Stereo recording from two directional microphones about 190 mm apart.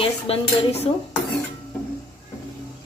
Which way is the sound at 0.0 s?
30° left (ahead or behind).